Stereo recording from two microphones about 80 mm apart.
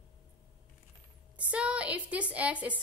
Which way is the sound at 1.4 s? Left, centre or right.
Centre.